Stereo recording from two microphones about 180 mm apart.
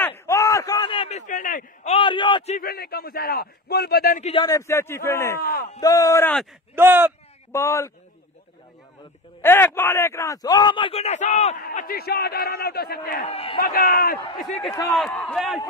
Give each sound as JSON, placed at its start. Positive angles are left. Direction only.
{"t": 0.3, "sound": "a sound", "side_deg": 15}
{"t": 2.0, "sound": "a man's voice", "side_deg": 25}
{"t": 2.6, "sound": "a man's voice", "side_deg": 60}
{"t": 4.2, "sound": "speech", "side_deg": 30}
{"t": 4.5, "sound": "a man's voice", "side_deg": 15}
{"t": 5.4, "sound": "a man's voice", "side_deg": 55}
{"t": 5.8, "sound": "a man's voice", "side_deg": 20}
{"t": 6.7, "sound": "speech", "side_deg": -10}
{"t": 7.5, "sound": "a man's voice", "side_deg": 15}
{"t": 9.4, "sound": "a man's voice", "side_deg": 10}
{"t": 11.6, "sound": "a man's voice", "side_deg": 55}
{"t": 13.2, "sound": "speech", "side_deg": 35}
{"t": 13.6, "sound": "a man's voice", "side_deg": 55}
{"t": 15.0, "sound": "a man's voice", "side_deg": 5}